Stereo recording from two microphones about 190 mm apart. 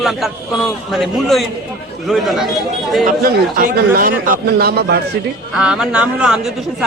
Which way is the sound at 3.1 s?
50° right (ahead or behind).